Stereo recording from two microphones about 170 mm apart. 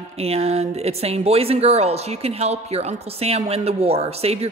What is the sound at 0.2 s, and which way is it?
Speech, 40° right (ahead or behind).